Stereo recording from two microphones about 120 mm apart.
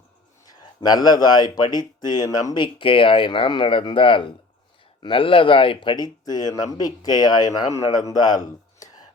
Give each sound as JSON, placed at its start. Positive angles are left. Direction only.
{"t": 0.8, "sound": "speech", "side_deg": 35}
{"t": 2.6, "sound": "speech", "side_deg": 45}